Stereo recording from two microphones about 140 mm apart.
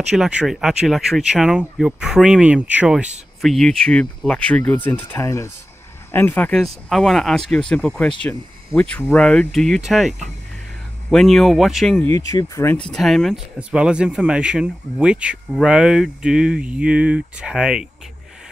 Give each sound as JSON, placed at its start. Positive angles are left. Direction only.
{"t": 0.1, "sound": "speech", "side_deg": 0}
{"t": 3.3, "sound": "speech", "side_deg": 0}
{"t": 12.0, "sound": "speech", "side_deg": 20}
{"t": 12.9, "sound": "speech", "side_deg": 0}